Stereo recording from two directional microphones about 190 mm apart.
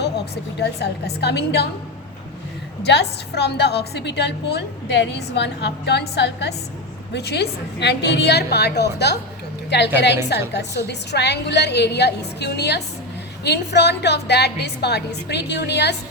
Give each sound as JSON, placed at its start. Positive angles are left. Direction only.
{"t": 0.6, "sound": "a woman's voice", "side_deg": 60}
{"t": 2.8, "sound": "a woman's voice", "side_deg": 60}